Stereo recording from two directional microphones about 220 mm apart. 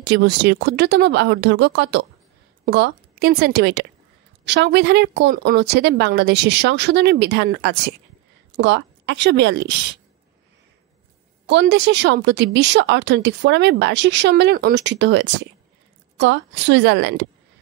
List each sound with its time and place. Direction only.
0.0 s a woman's voice: 50° right (ahead or behind)
11.4 s a woman's voice: 50° right (ahead or behind)